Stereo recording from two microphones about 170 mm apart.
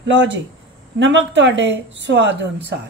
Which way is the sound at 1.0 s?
90° right.